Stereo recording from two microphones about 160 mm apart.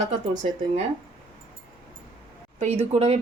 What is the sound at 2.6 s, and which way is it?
Speech, 40° right (ahead or behind).